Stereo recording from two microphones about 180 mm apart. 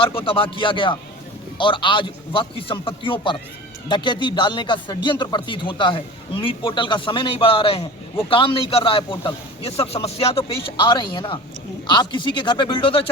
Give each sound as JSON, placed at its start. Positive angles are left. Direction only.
{"t": 0.0, "sound": "speech", "side_deg": 30}